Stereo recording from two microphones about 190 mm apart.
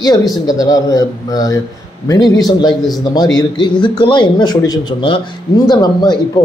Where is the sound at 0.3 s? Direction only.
20° left (ahead or behind).